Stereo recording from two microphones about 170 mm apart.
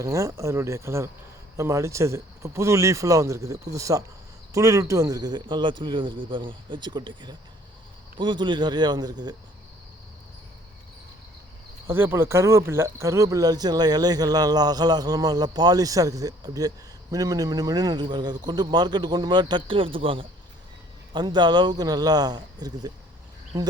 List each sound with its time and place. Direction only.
0.0 s speech: 20° right (ahead or behind)
11.9 s speech: 15° right (ahead or behind)